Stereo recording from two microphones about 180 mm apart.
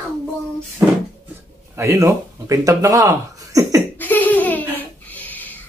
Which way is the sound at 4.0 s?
10° left (ahead or behind).